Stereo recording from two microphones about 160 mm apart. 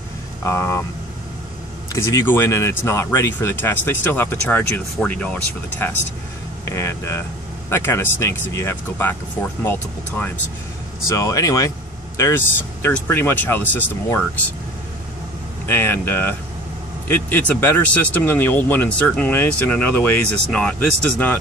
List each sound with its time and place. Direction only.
0.4 s speech: 15° left (ahead or behind)
1.9 s speech: 20° left (ahead or behind)
6.6 s speech: 15° left (ahead or behind)
15.6 s speech: 15° left (ahead or behind)